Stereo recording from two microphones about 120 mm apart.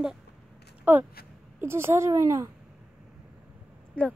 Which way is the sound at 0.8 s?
15° right (ahead or behind).